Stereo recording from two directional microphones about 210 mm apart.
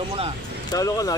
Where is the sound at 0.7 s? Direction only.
15° left (ahead or behind).